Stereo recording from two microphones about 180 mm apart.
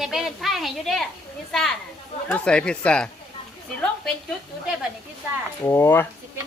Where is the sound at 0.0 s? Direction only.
Centre (ahead or behind).